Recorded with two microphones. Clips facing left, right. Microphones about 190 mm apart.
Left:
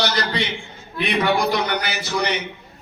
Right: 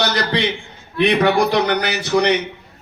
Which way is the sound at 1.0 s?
65° right (ahead or behind).